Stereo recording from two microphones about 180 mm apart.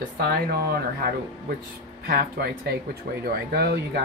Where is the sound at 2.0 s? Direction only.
60° right (ahead or behind).